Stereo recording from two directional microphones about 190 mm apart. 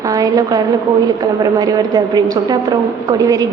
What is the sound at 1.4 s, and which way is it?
A woman's voice, 20° right (ahead or behind).